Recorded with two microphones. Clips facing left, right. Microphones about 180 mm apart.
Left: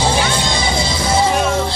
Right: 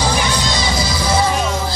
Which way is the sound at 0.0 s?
25° left (ahead or behind).